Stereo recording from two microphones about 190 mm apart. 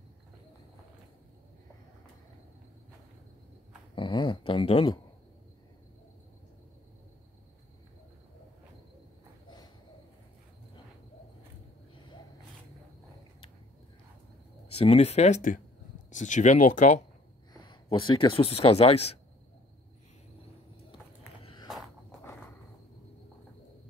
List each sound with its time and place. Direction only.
3.9 s speech: 25° left (ahead or behind)
14.8 s speech: 35° left (ahead or behind)
17.6 s speech: 25° left (ahead or behind)
21.7 s a sound: centre (ahead or behind)